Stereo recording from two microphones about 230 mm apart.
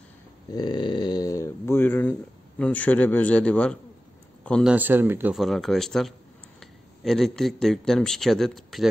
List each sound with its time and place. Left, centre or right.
0.6 s speech: centre
4.7 s speech: centre